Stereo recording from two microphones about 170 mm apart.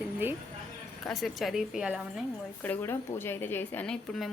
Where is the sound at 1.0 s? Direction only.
Centre (ahead or behind).